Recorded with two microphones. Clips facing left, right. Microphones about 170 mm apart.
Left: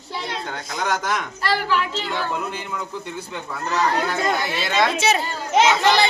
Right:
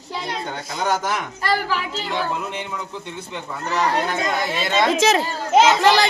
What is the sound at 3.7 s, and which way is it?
Speech, 15° right (ahead or behind).